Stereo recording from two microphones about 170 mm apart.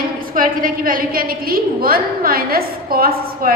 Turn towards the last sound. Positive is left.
turn(degrees=-60)  # may be behind; listen again after turning